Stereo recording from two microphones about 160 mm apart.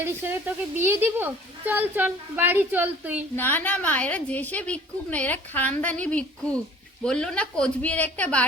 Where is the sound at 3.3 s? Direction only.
10° left (ahead or behind).